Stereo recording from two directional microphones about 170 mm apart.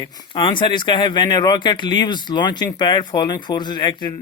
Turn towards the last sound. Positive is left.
turn(degrees=25)  # may be behind; listen again after turning